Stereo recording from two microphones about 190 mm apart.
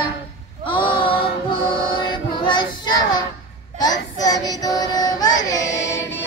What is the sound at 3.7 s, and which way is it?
Child singing, 20° left (ahead or behind).